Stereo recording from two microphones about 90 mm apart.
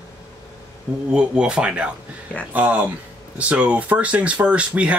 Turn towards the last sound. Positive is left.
turn(degrees=-15)  # may be behind; listen again after turning